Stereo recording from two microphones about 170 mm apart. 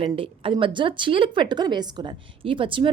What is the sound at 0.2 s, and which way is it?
A woman's voice, 30° right (ahead or behind).